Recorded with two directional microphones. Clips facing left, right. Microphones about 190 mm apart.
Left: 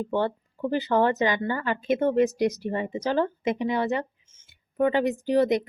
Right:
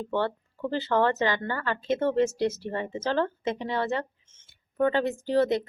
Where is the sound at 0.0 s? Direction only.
15° left (ahead or behind).